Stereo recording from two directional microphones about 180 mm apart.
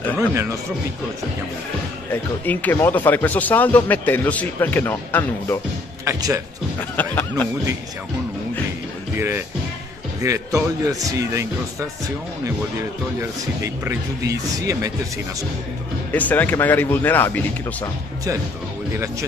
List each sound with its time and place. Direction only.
2.4 s speech: 10° left (ahead or behind)
6.0 s speech: 15° right (ahead or behind)
7.0 s speech: 10° left (ahead or behind)
9.1 s speech: 15° right (ahead or behind)
13.2 s speech: 15° right (ahead or behind)
16.1 s speech: 10° left (ahead or behind)